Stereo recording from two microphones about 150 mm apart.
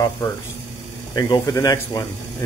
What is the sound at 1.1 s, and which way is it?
Speech, 25° left (ahead or behind).